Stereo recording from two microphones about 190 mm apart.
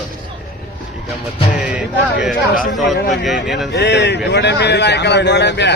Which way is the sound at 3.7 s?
65° left (ahead or behind).